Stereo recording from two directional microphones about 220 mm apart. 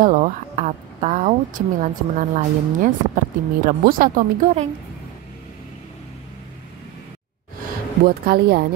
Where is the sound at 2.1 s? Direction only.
35° right (ahead or behind).